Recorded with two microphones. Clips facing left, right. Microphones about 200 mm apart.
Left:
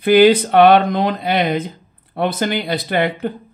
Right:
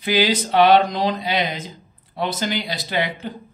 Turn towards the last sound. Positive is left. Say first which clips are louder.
# left 6 dB
turn(degrees=55)  # may be behind; listen again after turning